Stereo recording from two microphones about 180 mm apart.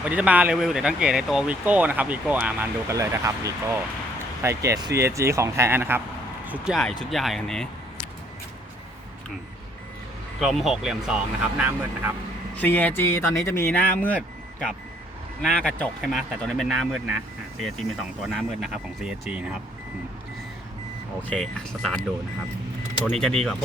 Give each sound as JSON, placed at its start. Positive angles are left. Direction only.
{"t": 0.0, "sound": "speech", "side_deg": -10}
{"t": 6.4, "sound": "a sound", "side_deg": -10}
{"t": 7.0, "sound": "speech", "side_deg": 0}
{"t": 10.4, "sound": "speech", "side_deg": 0}
{"t": 12.5, "sound": "speech", "side_deg": 10}
{"t": 18.2, "sound": "speech", "side_deg": 0}
{"t": 21.2, "sound": "speech", "side_deg": 5}
{"t": 23.0, "sound": "speech", "side_deg": 5}